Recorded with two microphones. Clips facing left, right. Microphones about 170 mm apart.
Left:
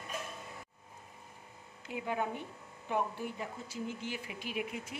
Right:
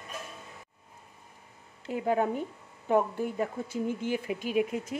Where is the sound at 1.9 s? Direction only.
45° right (ahead or behind).